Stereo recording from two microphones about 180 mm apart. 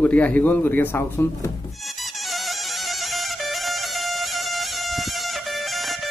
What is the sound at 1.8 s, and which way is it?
Music, centre (ahead or behind).